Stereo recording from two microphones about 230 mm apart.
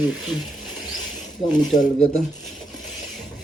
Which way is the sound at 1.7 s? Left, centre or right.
Left.